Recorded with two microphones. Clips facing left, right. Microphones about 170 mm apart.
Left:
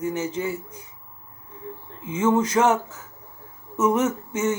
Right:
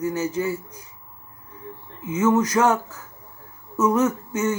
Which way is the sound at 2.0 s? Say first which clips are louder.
Right 1 dB; 25° left (ahead or behind).